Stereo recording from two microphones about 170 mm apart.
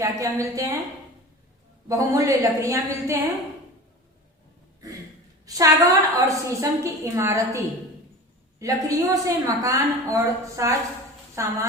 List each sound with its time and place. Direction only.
0.0 s a woman's voice: 20° right (ahead or behind)
1.9 s a woman's voice: 20° right (ahead or behind)
5.5 s a woman's voice: 20° right (ahead or behind)